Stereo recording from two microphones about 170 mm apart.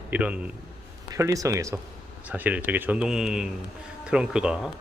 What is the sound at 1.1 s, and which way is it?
Speech, 20° right (ahead or behind).